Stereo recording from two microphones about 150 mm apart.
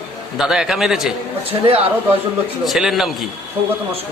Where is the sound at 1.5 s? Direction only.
40° right (ahead or behind).